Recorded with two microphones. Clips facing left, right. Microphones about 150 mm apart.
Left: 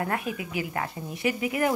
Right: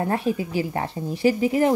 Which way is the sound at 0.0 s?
30° right (ahead or behind).